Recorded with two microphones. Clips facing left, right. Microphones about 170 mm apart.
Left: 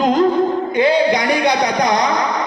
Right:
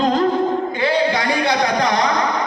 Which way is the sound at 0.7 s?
20° left (ahead or behind).